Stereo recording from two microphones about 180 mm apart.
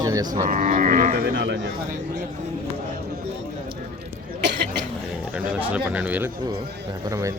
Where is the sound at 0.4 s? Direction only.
45° right (ahead or behind); by 1.7 s 80° right.